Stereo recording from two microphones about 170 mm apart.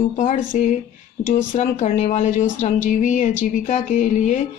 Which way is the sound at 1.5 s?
45° left (ahead or behind).